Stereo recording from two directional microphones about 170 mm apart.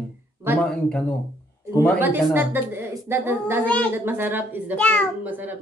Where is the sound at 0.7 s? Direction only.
5° left (ahead or behind).